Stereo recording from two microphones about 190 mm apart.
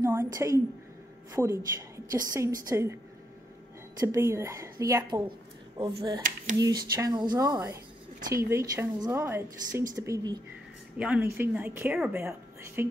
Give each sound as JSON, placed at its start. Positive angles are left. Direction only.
{"t": 0.0, "sound": "a sound", "side_deg": -15}
{"t": 1.3, "sound": "speech", "side_deg": -15}
{"t": 4.1, "sound": "speech", "side_deg": -15}
{"t": 11.0, "sound": "speech", "side_deg": -5}